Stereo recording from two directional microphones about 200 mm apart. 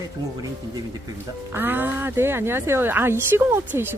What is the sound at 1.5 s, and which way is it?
A man's voice, 10° right (ahead or behind).